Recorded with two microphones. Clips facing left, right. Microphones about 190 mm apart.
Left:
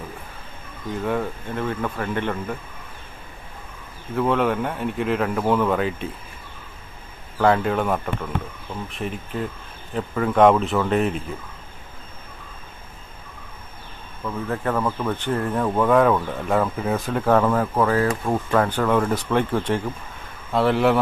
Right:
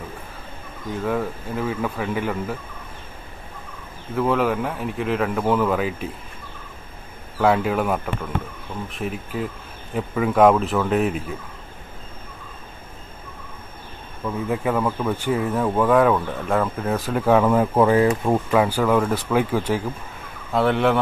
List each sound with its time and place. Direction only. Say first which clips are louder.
1.0 s speech: right 1 dB; centre (ahead or behind)
4.1 s speech: even; centre (ahead or behind)
7.3 s speech: even; 5° right (ahead or behind)
14.2 s speech: right 2 dB; 10° right (ahead or behind)
17.5 s speech: right 3 dB; 20° right (ahead or behind)
18.5 s speech: even; 10° right (ahead or behind)